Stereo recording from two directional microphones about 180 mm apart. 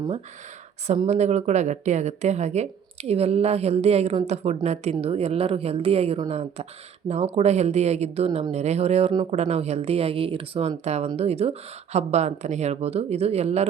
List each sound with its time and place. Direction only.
0.9 s speech: 35° right (ahead or behind)